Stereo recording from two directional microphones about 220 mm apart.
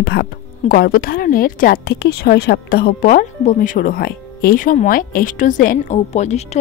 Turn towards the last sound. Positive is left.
turn(degrees=30)  # may be behind; listen again after turning